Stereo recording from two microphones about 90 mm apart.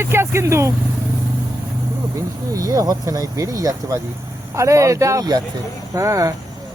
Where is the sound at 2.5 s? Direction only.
45° right (ahead or behind).